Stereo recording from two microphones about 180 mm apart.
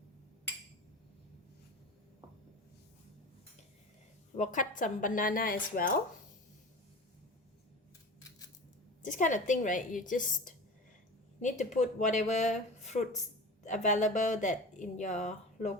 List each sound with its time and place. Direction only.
4.4 s speech: 45° left (ahead or behind)
9.0 s speech: 45° left (ahead or behind)